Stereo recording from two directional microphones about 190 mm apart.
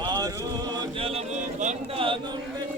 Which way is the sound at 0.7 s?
30° right (ahead or behind).